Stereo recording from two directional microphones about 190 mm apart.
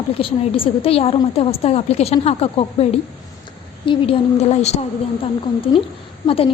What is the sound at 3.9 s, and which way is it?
A woman's voice, 30° left (ahead or behind).